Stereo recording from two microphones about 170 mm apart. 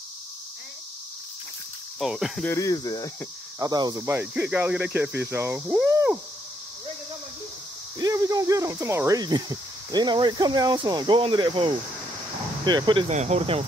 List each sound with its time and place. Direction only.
2.0 s cricket: centre (ahead or behind)
2.4 s speech: 20° left (ahead or behind)
3.5 s speech: 20° right (ahead or behind)
8.0 s speech: 20° right (ahead or behind)
13.1 s speech: 40° right (ahead or behind)